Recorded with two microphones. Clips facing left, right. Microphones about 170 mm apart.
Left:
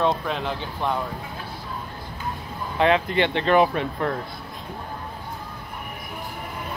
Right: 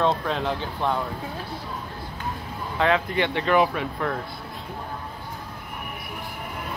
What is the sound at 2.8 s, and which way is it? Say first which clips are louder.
Speech: left 2 dB; 20° left (ahead or behind).